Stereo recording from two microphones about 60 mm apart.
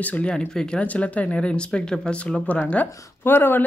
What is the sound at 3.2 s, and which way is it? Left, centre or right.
Speech, left.